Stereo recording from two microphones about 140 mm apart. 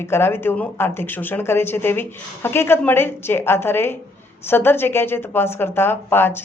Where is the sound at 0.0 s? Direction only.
15° left (ahead or behind).